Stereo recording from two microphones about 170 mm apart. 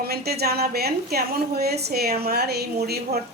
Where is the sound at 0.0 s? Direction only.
70° right (ahead or behind).